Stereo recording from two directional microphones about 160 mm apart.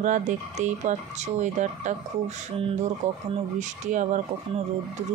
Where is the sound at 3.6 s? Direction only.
50° right (ahead or behind).